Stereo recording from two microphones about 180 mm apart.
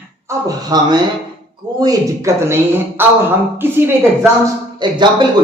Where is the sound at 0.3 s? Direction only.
20° right (ahead or behind).